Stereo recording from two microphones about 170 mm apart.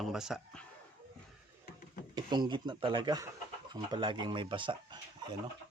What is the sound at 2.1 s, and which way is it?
Speech, 25° right (ahead or behind).